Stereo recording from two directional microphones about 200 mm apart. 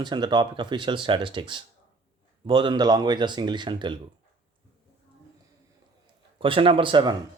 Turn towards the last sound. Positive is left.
turn(degrees=-25)  # may be behind; listen again after turning